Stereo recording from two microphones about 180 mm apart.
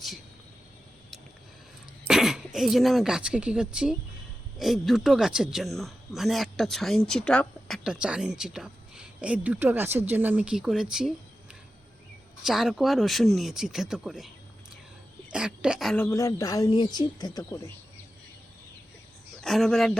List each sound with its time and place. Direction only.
2.0 s speech: 5° right (ahead or behind)
12.5 s speech: centre (ahead or behind)
15.3 s a woman's voice: 5° right (ahead or behind)
16.0 s speech: 15° left (ahead or behind)
19.4 s speech: centre (ahead or behind)